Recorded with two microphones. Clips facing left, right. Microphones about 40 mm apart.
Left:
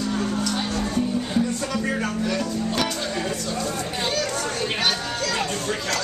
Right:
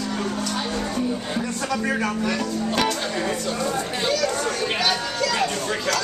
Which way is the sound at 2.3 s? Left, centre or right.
Right.